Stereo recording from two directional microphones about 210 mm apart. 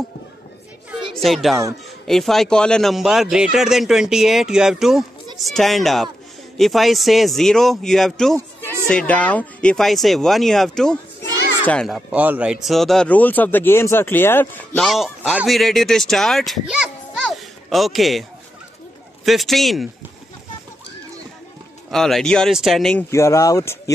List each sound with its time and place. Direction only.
1.2 s speech: centre (ahead or behind)
14.9 s speech: centre (ahead or behind)
19.2 s speech: centre (ahead or behind)
21.9 s speech: centre (ahead or behind)
23.1 s speech: 15° left (ahead or behind)